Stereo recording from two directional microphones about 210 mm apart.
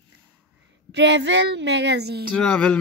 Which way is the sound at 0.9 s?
55° right (ahead or behind).